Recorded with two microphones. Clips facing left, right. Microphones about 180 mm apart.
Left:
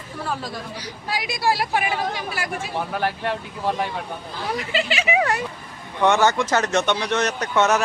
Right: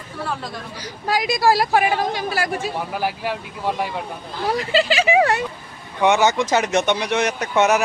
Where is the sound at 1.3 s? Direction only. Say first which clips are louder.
Right 5 dB; 40° right (ahead or behind).